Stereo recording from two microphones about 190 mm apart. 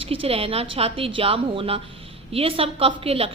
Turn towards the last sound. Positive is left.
turn(degrees=-30)  # may be behind; listen again after turning